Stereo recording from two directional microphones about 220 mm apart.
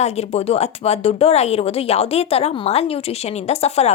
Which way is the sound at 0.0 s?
30° left (ahead or behind).